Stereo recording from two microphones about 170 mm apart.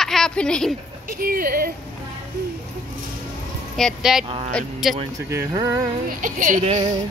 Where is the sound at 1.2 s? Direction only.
60° right (ahead or behind).